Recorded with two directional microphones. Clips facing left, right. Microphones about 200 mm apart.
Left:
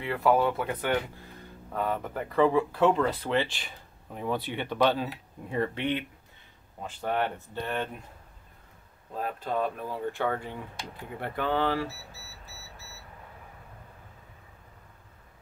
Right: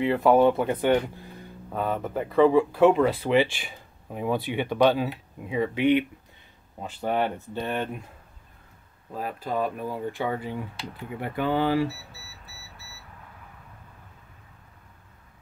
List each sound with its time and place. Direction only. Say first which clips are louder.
0.0 s speech: right 6 dB; 20° right (ahead or behind)
9.1 s speech: right 1 dB; 5° right (ahead or behind)